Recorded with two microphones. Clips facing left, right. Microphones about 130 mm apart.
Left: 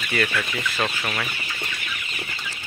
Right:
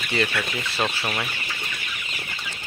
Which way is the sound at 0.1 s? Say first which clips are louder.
Even; 25° right (ahead or behind).